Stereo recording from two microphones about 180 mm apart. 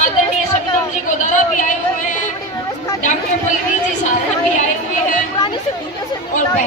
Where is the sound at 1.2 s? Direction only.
45° left (ahead or behind).